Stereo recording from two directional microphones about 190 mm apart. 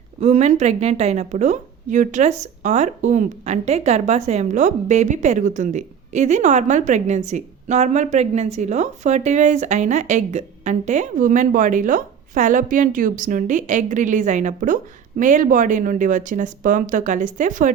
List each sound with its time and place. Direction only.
0.2 s a woman's voice: 35° right (ahead or behind)